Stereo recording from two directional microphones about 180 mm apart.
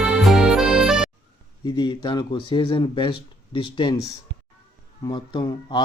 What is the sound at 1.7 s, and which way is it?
Speech, 25° left (ahead or behind).